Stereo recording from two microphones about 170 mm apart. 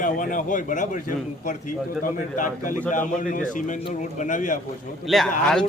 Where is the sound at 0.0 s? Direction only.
50° left (ahead or behind).